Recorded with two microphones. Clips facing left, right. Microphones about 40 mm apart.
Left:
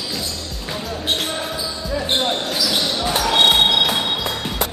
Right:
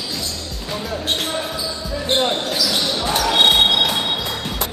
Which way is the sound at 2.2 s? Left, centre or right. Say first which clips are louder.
Right 1 dB; centre.